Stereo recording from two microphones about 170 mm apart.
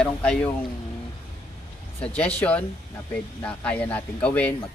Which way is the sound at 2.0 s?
5° left (ahead or behind).